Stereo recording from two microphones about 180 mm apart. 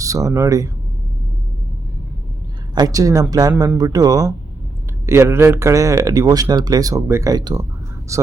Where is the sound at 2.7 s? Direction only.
20° right (ahead or behind).